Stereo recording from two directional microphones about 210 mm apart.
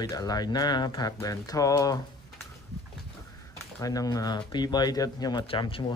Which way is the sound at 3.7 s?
15° left (ahead or behind).